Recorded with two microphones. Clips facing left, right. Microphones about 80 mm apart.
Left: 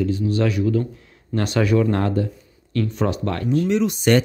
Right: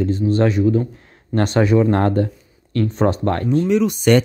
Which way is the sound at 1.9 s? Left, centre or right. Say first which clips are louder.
Right 4 dB; right.